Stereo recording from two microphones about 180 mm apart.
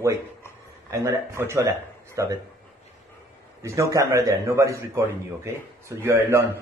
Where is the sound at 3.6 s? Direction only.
15° right (ahead or behind).